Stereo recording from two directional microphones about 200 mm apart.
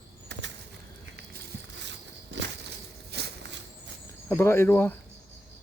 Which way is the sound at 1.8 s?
60° right (ahead or behind).